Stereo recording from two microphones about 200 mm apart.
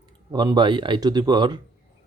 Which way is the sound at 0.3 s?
20° right (ahead or behind).